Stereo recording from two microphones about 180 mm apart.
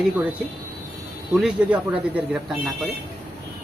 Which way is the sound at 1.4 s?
5° right (ahead or behind).